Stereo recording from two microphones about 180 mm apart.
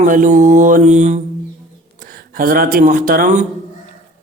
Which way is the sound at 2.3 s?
50° right (ahead or behind).